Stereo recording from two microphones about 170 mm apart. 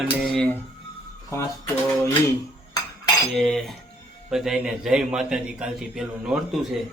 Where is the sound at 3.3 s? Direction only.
Centre (ahead or behind).